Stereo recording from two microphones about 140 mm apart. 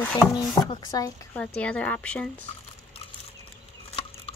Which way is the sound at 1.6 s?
10° left (ahead or behind).